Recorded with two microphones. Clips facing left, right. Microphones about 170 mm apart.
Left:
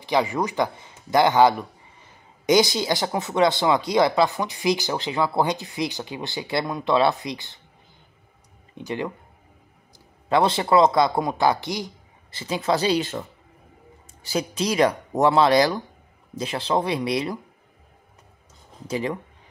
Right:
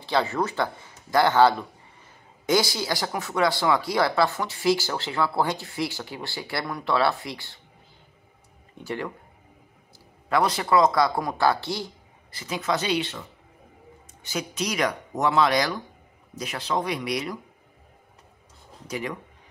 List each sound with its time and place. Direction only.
0.0 s speech: 15° left (ahead or behind)
8.7 s speech: 20° left (ahead or behind)
10.3 s speech: 25° left (ahead or behind)
14.2 s speech: 35° left (ahead or behind)
18.9 s speech: 30° left (ahead or behind)